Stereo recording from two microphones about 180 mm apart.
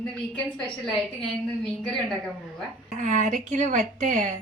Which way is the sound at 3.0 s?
45° right (ahead or behind).